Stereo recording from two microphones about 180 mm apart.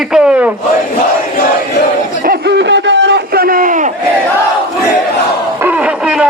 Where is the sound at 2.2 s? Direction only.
65° right (ahead or behind); by 3.9 s 45° right (ahead or behind).